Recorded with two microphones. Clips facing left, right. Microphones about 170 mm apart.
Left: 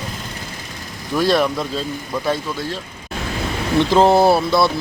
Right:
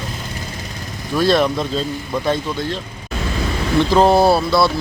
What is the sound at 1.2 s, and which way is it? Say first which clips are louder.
Speech: right 1 dB; 10° left (ahead or behind).